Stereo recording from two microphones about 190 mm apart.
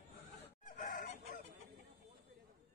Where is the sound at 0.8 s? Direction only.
45° left (ahead or behind).